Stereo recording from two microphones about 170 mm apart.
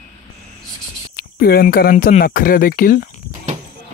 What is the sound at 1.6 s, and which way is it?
Speech, 60° left (ahead or behind).